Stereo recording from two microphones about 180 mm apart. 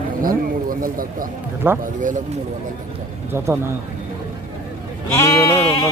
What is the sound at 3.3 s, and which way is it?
Speech, 15° right (ahead or behind).